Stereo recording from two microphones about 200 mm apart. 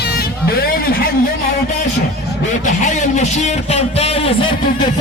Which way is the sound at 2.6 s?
35° left (ahead or behind).